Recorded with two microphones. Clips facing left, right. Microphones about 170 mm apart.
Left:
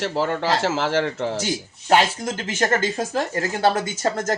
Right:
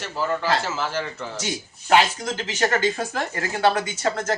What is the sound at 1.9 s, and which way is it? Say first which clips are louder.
Speech: left 1 dB; 50° left (ahead or behind).